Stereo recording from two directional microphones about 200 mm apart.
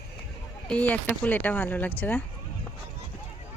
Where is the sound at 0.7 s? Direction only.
5° left (ahead or behind).